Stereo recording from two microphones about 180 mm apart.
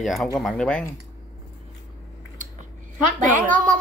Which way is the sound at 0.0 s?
Centre (ahead or behind).